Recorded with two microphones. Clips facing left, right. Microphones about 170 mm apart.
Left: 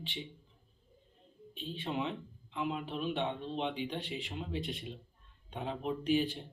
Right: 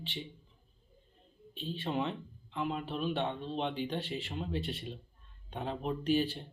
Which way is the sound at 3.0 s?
40° right (ahead or behind).